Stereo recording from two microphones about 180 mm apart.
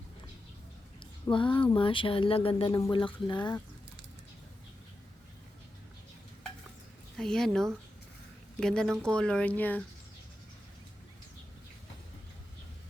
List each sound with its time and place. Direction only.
0.9 s a sound: 30° left (ahead or behind)
1.7 s speech: 30° left (ahead or behind)
7.2 s speech: centre (ahead or behind)